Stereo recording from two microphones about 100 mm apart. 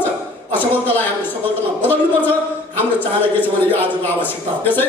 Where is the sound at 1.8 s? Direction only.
20° left (ahead or behind).